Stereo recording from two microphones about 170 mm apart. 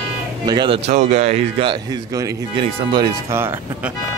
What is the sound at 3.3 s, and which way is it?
Speech, 15° right (ahead or behind).